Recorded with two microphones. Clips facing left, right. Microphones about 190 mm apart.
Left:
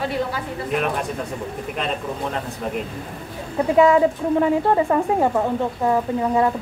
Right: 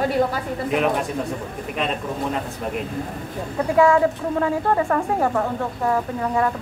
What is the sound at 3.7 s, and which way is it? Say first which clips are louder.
A woman's voice: left 1 dB; 20° left (ahead or behind).